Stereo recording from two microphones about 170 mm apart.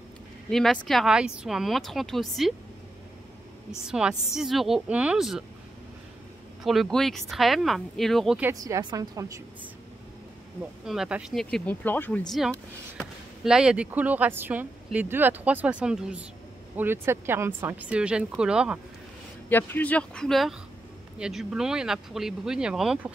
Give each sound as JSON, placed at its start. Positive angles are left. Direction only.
{"t": 0.5, "sound": "speech", "side_deg": 0}
{"t": 3.8, "sound": "speech", "side_deg": -5}
{"t": 6.6, "sound": "speech", "side_deg": 0}
{"t": 8.4, "sound": "speech", "side_deg": -15}
{"t": 10.9, "sound": "speech", "side_deg": -5}
{"t": 19.5, "sound": "speech", "side_deg": 10}